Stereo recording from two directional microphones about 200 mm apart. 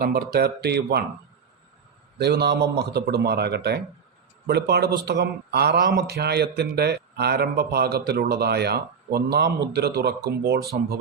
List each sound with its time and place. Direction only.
0.0 s speech: 50° right (ahead or behind)
2.1 s speech: 55° right (ahead or behind)